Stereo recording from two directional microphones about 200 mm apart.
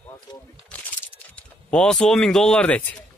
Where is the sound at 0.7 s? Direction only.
5° left (ahead or behind).